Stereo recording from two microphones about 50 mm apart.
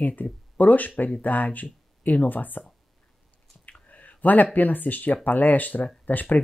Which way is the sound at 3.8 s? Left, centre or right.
Left.